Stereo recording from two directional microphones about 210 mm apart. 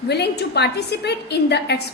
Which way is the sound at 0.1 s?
50° left (ahead or behind).